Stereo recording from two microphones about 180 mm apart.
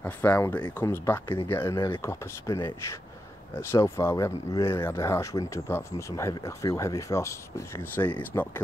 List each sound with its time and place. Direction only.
0.0 s speech: 15° left (ahead or behind)
1.8 s speech: 25° left (ahead or behind)